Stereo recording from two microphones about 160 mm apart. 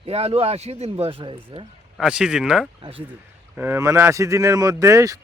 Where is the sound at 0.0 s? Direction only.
40° right (ahead or behind).